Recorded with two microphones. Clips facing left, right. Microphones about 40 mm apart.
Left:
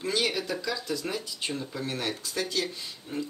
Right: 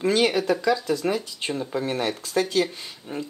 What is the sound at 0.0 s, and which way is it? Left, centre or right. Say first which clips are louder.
Speech: right 8 dB; right.